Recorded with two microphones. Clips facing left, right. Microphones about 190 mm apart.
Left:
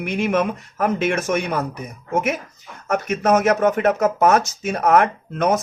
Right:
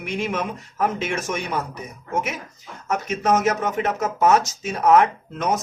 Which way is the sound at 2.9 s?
55° left (ahead or behind).